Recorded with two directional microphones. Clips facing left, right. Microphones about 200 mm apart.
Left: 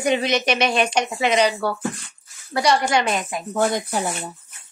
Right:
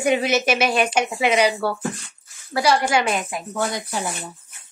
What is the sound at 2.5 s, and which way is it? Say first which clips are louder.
Speech: even; 5° right (ahead or behind).